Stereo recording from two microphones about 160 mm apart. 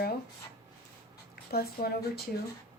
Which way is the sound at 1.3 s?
75° left (ahead or behind).